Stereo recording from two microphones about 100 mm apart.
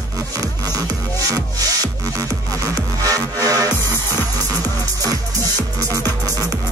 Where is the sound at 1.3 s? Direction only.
35° right (ahead or behind).